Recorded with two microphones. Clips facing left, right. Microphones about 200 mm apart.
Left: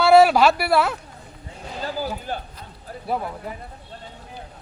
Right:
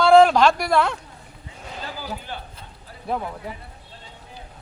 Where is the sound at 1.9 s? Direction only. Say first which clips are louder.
Left 7 dB; 45° left (ahead or behind).